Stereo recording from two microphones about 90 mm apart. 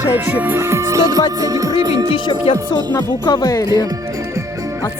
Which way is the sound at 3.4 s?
40° left (ahead or behind).